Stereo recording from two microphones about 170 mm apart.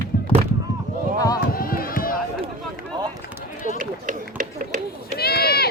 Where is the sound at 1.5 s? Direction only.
60° left (ahead or behind).